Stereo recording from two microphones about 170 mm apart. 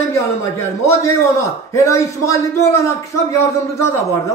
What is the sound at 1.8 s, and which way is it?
A man's voice, 15° left (ahead or behind).